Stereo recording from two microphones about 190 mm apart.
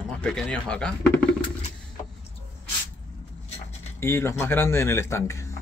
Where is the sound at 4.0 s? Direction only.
15° left (ahead or behind).